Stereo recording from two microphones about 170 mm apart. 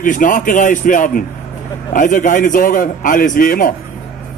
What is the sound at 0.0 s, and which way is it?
A man's voice, 50° left (ahead or behind).